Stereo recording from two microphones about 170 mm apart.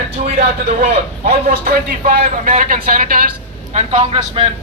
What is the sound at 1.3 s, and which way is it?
Speech, 55° right (ahead or behind).